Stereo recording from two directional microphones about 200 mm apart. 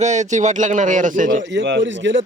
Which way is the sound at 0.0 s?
35° right (ahead or behind).